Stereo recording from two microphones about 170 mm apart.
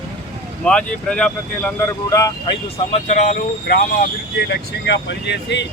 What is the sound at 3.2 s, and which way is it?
Speech, 50° left (ahead or behind).